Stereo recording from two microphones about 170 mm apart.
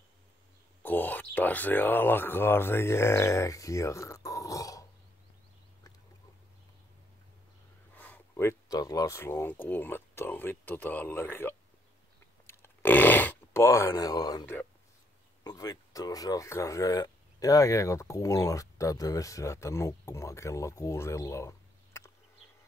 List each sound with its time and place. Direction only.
0.8 s speech: 10° left (ahead or behind)
7.9 s speech: 10° left (ahead or behind)
12.4 s a sound: 10° left (ahead or behind)
14.4 s speech: 10° left (ahead or behind)
15.4 s speech: 20° left (ahead or behind)